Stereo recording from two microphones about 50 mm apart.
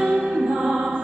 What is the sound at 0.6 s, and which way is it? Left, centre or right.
Music, right.